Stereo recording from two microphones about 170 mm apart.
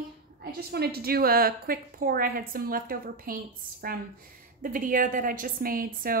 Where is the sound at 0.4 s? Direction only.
65° right (ahead or behind).